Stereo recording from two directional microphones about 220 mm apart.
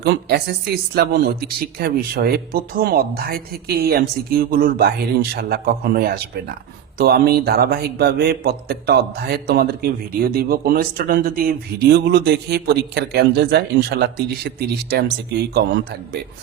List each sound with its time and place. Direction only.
0.0 s a man's voice: 45° right (ahead or behind)